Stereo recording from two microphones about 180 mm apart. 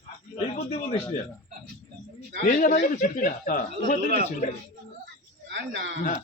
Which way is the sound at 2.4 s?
50° left (ahead or behind).